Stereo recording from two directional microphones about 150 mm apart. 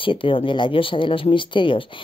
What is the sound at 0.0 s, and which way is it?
Speech, 35° left (ahead or behind).